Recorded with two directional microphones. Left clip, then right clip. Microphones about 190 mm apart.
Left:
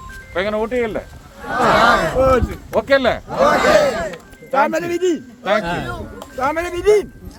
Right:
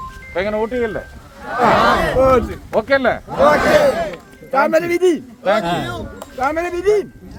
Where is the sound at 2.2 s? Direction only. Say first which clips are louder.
Right 2 dB; 35° right (ahead or behind).